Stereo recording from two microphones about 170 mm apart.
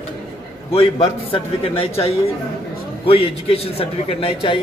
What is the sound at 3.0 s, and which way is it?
A man's voice, 35° left (ahead or behind).